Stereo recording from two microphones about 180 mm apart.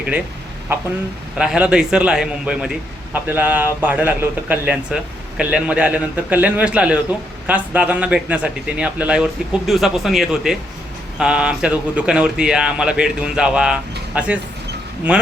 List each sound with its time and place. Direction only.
1.4 s a man's voice: 5° right (ahead or behind)